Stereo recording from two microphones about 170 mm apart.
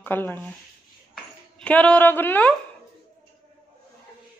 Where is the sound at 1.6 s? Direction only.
5° left (ahead or behind).